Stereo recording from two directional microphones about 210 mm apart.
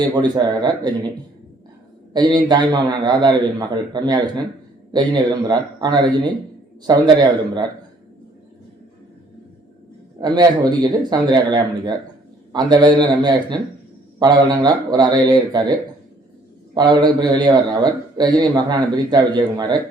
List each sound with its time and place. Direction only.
0.3 s a man's voice: 20° right (ahead or behind)
2.1 s a man's voice: 20° right (ahead or behind)
10.2 s a man's voice: 20° right (ahead or behind)
16.7 s a man's voice: 20° right (ahead or behind)